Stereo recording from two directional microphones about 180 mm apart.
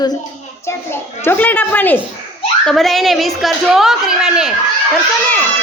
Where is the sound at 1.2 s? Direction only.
10° left (ahead or behind).